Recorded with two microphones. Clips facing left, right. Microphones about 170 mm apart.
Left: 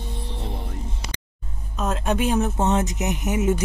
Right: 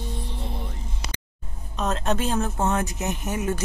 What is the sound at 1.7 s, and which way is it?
Speech, 5° left (ahead or behind).